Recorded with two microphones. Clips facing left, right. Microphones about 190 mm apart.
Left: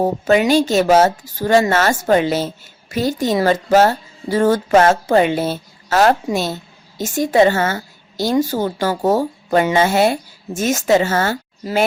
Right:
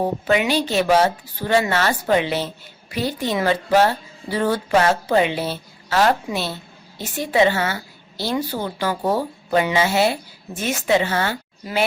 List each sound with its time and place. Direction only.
0.0 s a woman's voice: 40° left (ahead or behind)